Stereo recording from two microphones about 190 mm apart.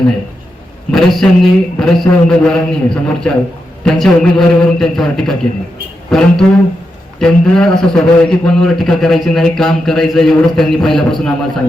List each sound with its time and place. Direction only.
0.9 s a man's voice: centre (ahead or behind)